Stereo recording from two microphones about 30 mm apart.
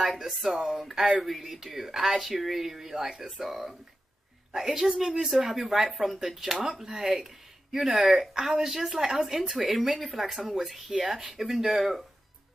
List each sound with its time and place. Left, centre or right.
0.0 s speech: centre
4.6 s speech: centre
7.7 s speech: centre